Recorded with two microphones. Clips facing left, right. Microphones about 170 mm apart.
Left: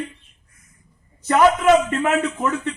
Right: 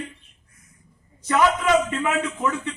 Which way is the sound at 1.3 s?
50° left (ahead or behind).